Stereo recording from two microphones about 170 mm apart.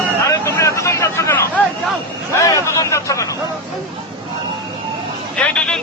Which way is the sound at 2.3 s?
20° left (ahead or behind).